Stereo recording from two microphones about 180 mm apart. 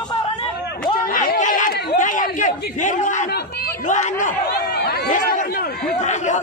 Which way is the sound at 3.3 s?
60° left (ahead or behind).